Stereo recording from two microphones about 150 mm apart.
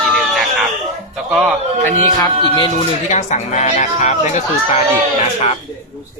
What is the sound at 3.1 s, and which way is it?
Speech, 50° left (ahead or behind).